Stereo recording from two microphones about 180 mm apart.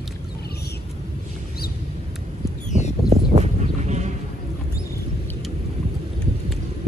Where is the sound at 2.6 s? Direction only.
40° left (ahead or behind).